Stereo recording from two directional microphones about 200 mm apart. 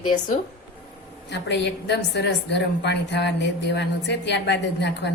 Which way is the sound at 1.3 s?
60° left (ahead or behind).